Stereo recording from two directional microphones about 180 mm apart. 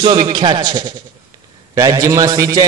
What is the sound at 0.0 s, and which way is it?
A man's voice, 25° right (ahead or behind).